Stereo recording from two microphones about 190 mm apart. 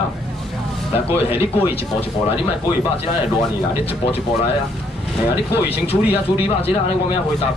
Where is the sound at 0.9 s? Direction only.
30° left (ahead or behind).